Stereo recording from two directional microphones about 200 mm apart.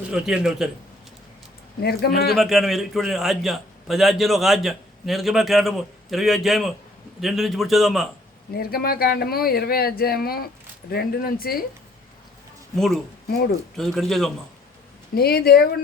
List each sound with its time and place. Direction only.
0.1 s a man's voice: 5° right (ahead or behind)
1.8 s speech: 50° left (ahead or behind)
2.3 s a man's voice: centre (ahead or behind)
8.5 s speech: 50° left (ahead or behind)
12.7 s a man's voice: centre (ahead or behind)
13.3 s speech: 50° left (ahead or behind)
13.7 s a man's voice: centre (ahead or behind)
15.1 s speech: 50° left (ahead or behind)